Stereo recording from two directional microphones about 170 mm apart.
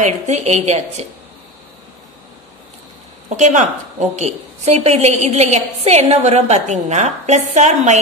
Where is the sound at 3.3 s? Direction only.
45° right (ahead or behind).